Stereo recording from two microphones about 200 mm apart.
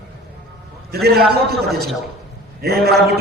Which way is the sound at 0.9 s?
50° right (ahead or behind).